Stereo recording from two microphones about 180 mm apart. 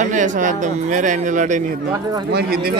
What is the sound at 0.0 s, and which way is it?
Speech, 45° right (ahead or behind).